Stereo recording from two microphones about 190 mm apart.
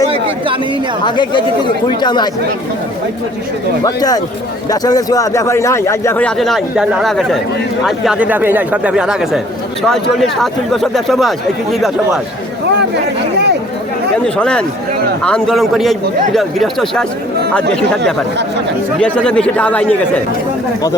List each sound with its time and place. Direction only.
1.0 s speech: 25° left (ahead or behind)
3.8 s speech: 20° left (ahead or behind); by 12.2 s centre (ahead or behind)
14.3 s speech: 5° left (ahead or behind)
18.9 s speech: 5° left (ahead or behind)